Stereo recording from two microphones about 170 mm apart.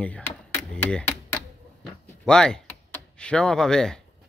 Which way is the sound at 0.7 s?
10° left (ahead or behind).